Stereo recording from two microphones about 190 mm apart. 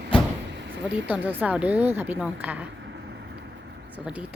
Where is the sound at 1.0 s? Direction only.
10° right (ahead or behind).